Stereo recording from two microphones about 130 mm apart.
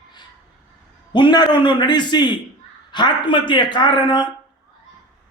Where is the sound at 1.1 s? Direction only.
35° left (ahead or behind).